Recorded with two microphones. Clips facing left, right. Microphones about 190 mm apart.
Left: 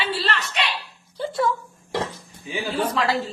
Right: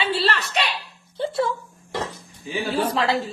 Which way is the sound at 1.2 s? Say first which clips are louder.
Even; 25° right (ahead or behind).